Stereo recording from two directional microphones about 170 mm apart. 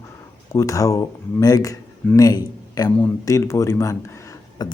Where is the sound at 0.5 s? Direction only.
20° left (ahead or behind).